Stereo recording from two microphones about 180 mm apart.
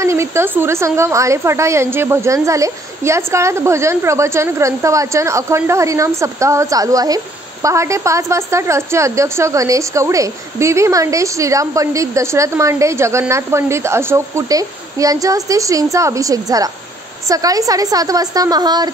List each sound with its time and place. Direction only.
0.0 s a woman's voice: 15° right (ahead or behind)